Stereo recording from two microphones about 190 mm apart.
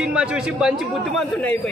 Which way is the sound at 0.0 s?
5° right (ahead or behind).